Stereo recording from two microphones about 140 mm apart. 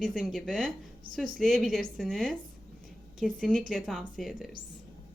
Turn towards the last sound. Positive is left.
turn(degrees=0)  # may be behind; listen again after turning